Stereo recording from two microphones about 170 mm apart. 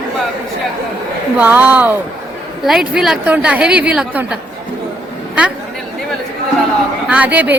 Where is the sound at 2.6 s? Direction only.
Centre (ahead or behind).